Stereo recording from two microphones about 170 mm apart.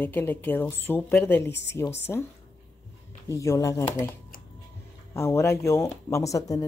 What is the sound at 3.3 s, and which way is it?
Speech, 20° left (ahead or behind).